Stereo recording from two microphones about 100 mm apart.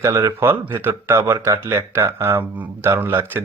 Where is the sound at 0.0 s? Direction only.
30° right (ahead or behind).